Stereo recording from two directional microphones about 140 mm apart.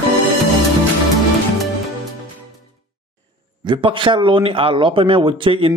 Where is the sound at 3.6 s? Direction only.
35° right (ahead or behind).